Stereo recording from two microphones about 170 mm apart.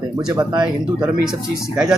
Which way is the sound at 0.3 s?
20° right (ahead or behind).